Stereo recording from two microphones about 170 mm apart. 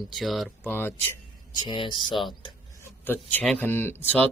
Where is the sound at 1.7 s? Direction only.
25° left (ahead or behind).